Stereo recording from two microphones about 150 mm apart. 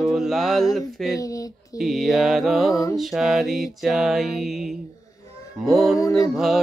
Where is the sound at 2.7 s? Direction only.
20° left (ahead or behind).